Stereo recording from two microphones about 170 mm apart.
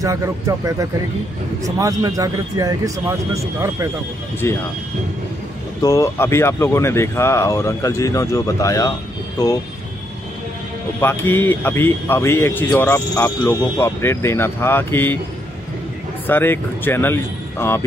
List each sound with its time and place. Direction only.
0.0 s a man's voice: 20° right (ahead or behind)
4.4 s speech: 15° left (ahead or behind)
5.8 s speech: 20° left (ahead or behind)
11.0 s speech: 10° left (ahead or behind)
16.3 s speech: 10° left (ahead or behind)